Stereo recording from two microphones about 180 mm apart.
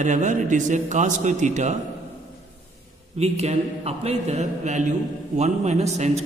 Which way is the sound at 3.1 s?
35° right (ahead or behind).